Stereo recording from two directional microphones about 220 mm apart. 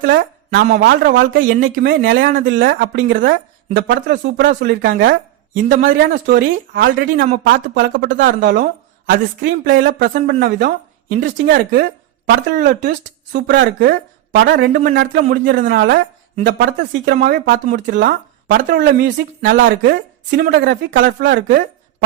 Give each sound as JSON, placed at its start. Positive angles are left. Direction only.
{"t": 0.0, "sound": "a woman's voice", "side_deg": -40}
{"t": 2.0, "sound": "speech", "side_deg": -55}
{"t": 5.5, "sound": "speech", "side_deg": -35}
{"t": 7.0, "sound": "speech", "side_deg": -40}